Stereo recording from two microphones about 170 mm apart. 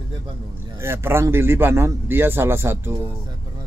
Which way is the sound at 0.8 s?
15° right (ahead or behind).